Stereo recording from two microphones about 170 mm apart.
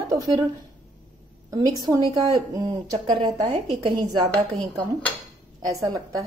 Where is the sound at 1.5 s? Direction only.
20° right (ahead or behind).